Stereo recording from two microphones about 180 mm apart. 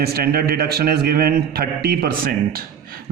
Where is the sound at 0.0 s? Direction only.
60° right (ahead or behind).